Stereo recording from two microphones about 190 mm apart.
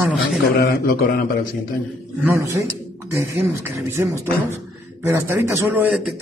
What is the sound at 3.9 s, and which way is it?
Speech, 15° right (ahead or behind).